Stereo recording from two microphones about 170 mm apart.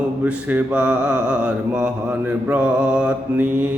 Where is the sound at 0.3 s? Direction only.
10° right (ahead or behind).